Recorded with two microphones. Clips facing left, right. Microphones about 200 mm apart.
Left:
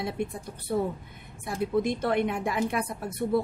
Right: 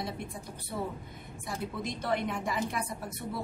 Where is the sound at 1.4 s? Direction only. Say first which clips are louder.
Left 10 dB; 55° left (ahead or behind).